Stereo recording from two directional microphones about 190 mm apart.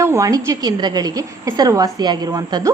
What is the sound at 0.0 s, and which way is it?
A woman's voice, 15° right (ahead or behind).